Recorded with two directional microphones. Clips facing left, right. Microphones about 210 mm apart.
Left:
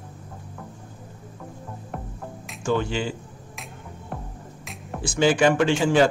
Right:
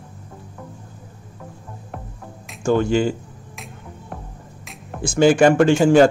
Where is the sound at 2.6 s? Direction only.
45° right (ahead or behind).